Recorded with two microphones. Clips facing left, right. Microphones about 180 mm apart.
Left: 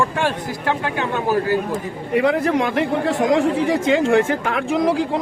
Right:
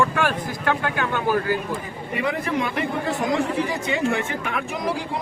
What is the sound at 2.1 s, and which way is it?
Speech, 70° left (ahead or behind).